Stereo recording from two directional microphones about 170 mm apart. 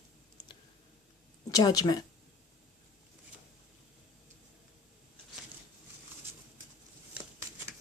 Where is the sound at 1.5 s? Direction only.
20° left (ahead or behind).